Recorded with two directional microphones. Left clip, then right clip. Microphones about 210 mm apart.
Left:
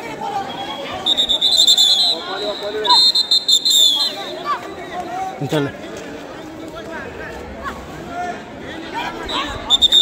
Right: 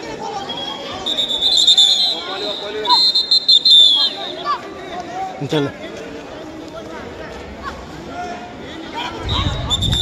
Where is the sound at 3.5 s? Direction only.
55° left (ahead or behind).